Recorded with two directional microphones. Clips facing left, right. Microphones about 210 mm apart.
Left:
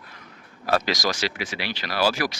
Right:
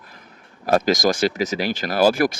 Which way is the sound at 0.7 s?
45° right (ahead or behind).